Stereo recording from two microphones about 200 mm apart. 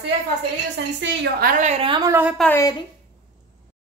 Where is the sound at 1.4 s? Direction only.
35° right (ahead or behind); by 2.3 s 10° right (ahead or behind).